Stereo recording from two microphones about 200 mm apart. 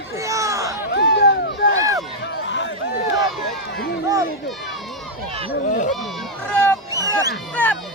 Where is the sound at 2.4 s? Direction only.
65° left (ahead or behind).